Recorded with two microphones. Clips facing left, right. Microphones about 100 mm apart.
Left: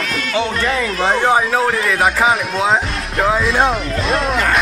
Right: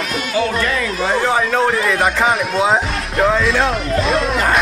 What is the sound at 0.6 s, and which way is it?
Speech, 35° left (ahead or behind).